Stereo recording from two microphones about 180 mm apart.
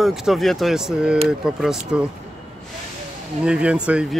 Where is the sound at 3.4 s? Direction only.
5° right (ahead or behind).